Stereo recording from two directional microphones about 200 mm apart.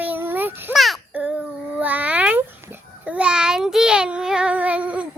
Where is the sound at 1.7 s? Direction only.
10° right (ahead or behind).